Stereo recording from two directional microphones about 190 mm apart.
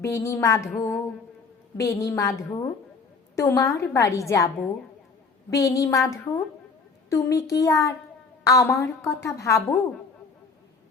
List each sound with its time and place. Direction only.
0.0 s a woman's voice: 15° left (ahead or behind)
1.8 s a woman's voice: 15° left (ahead or behind)